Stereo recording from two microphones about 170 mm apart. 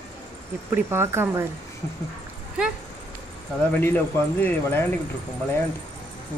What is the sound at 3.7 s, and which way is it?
Speech, 10° left (ahead or behind).